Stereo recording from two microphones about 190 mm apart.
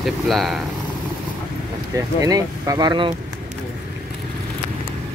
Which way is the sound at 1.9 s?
15° right (ahead or behind).